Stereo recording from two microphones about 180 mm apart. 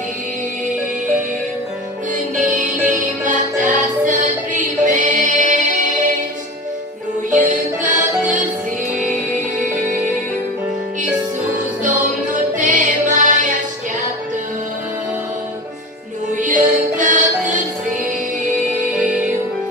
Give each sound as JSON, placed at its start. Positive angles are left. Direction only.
{"t": 2.6, "sound": "music", "side_deg": -45}
{"t": 7.2, "sound": "music", "side_deg": -45}
{"t": 12.5, "sound": "music", "side_deg": -45}
{"t": 16.3, "sound": "music", "side_deg": -45}
{"t": 18.9, "sound": "music", "side_deg": -5}